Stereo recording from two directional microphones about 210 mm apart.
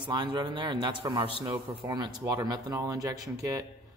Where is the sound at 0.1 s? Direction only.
20° right (ahead or behind).